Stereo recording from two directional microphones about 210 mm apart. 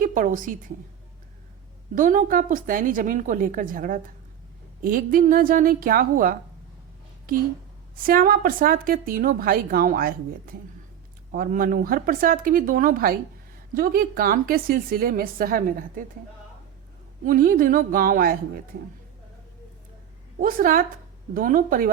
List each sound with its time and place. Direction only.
0.0 s a woman's voice: 40° right (ahead or behind)
2.0 s a woman's voice: 40° right (ahead or behind)
7.9 s a woman's voice: 45° right (ahead or behind)
17.2 s a woman's voice: 40° right (ahead or behind)
20.4 s a woman's voice: 45° right (ahead or behind)